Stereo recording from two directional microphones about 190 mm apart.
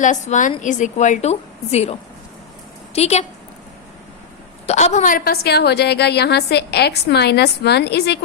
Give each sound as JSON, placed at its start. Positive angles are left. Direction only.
{"t": 0.0, "sound": "a woman's voice", "side_deg": 40}
{"t": 4.6, "sound": "a woman's voice", "side_deg": 35}